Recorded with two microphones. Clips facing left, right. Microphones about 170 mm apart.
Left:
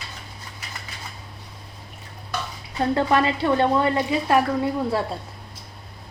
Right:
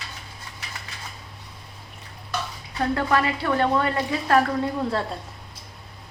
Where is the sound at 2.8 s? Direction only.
20° left (ahead or behind).